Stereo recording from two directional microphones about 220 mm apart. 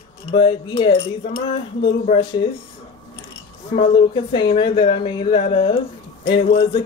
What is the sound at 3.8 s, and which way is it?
Speech, 25° left (ahead or behind).